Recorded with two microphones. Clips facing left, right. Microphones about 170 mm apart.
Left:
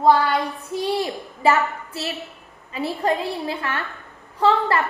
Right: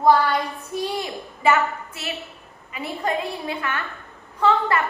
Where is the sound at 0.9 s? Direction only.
35° left (ahead or behind).